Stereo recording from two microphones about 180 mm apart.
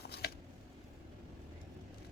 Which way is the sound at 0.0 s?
65° left (ahead or behind).